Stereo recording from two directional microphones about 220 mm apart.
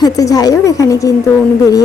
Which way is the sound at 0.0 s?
15° left (ahead or behind).